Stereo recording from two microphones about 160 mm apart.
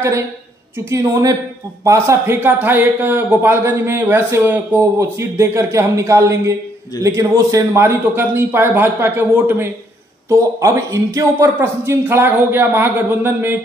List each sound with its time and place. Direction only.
0.8 s a woman's voice: 20° right (ahead or behind)